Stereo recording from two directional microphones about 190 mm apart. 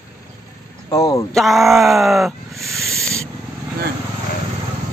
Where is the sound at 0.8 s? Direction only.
15° left (ahead or behind).